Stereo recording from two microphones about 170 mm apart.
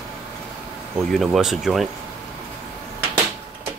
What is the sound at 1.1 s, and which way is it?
Speech, centre (ahead or behind).